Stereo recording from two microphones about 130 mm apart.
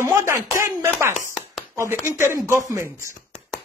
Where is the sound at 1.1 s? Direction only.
5° right (ahead or behind).